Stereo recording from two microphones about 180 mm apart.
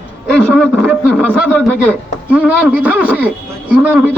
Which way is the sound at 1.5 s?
5° left (ahead or behind).